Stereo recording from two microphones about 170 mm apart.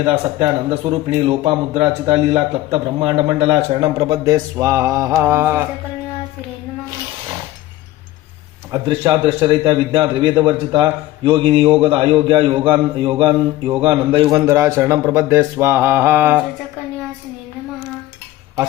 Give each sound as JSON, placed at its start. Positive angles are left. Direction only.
{"t": 0.3, "sound": "speech", "side_deg": -40}
{"t": 8.7, "sound": "a man's voice", "side_deg": -25}